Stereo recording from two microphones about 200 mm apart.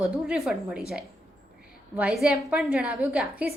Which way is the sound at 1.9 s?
5° right (ahead or behind).